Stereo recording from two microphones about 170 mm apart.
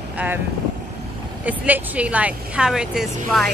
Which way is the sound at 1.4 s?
10° right (ahead or behind).